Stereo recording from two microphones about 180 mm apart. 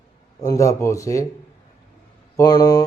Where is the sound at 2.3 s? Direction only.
20° left (ahead or behind).